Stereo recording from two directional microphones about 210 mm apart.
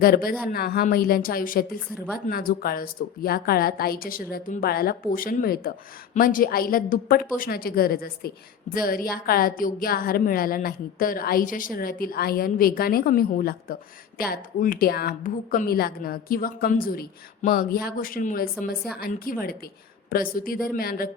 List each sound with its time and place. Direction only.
0.0 s speech: 45° left (ahead or behind)